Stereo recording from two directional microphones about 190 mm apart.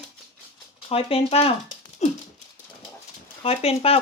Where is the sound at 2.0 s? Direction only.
35° left (ahead or behind).